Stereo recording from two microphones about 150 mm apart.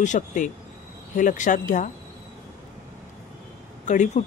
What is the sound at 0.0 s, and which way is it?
Speech, 55° left (ahead or behind).